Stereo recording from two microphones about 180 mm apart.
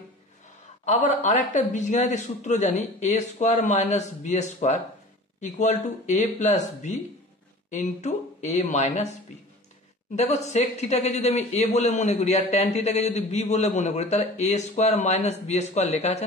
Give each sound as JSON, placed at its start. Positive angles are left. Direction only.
{"t": 0.8, "sound": "speech", "side_deg": 40}
{"t": 10.1, "sound": "speech", "side_deg": 40}